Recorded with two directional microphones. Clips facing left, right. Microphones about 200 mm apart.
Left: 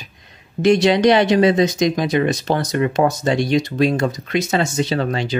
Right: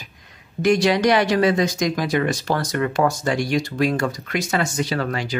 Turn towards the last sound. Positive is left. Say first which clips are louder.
# left 4 dB
turn(degrees=25)  # may be behind; listen again after turning